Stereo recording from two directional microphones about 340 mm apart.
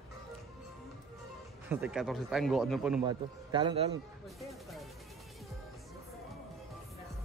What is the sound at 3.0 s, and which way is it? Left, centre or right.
Speech, centre.